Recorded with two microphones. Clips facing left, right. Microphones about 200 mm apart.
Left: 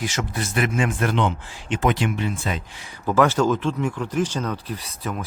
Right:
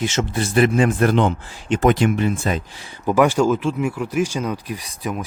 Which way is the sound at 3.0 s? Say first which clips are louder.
Right 3 dB; 15° right (ahead or behind).